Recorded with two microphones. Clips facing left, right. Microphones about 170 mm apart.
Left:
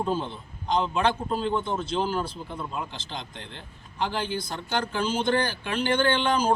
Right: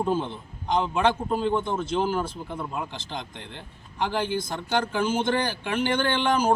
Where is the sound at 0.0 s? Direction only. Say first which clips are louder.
Right 2 dB; 15° right (ahead or behind).